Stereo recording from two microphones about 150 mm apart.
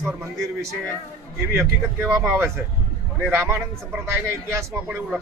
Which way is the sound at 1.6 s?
15° right (ahead or behind).